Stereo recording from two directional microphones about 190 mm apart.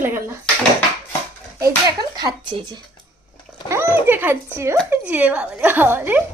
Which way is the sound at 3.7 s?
10° right (ahead or behind).